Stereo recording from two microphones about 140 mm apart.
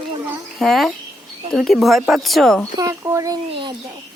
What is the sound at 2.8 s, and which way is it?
Speech, 20° right (ahead or behind).